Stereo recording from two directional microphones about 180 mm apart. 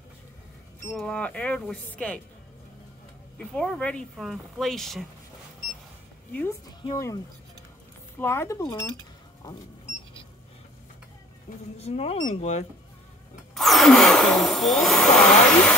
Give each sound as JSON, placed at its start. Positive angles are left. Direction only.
{"t": 0.9, "sound": "speech", "side_deg": 5}
{"t": 3.3, "sound": "speech", "side_deg": 5}
{"t": 6.8, "sound": "speech", "side_deg": 20}
{"t": 8.2, "sound": "speech", "side_deg": 15}
{"t": 11.8, "sound": "speech", "side_deg": 35}
{"t": 13.6, "sound": "a sound", "side_deg": 0}